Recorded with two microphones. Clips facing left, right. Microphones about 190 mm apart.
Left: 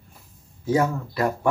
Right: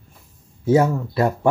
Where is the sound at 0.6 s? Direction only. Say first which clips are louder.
Right 5 dB; 25° right (ahead or behind).